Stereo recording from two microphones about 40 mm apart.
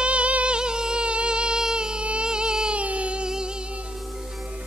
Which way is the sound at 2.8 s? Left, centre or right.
Right.